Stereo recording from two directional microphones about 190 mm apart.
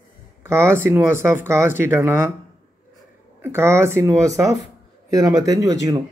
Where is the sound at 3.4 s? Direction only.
10° right (ahead or behind).